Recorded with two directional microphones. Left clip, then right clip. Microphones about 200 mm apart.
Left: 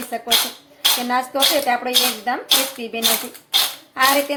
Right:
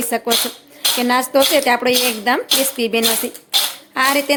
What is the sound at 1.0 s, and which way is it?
A woman's voice, 55° right (ahead or behind).